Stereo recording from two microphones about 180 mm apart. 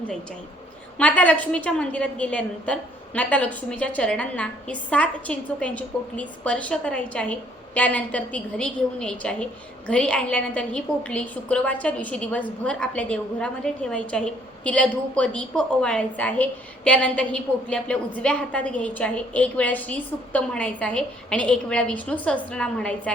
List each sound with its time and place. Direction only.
0.9 s a woman's voice: 10° left (ahead or behind)